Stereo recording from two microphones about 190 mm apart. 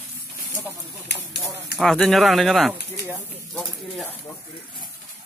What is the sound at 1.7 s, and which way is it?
Speech, centre (ahead or behind).